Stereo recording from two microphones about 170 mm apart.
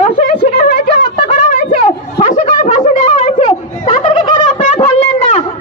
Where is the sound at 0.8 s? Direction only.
45° left (ahead or behind).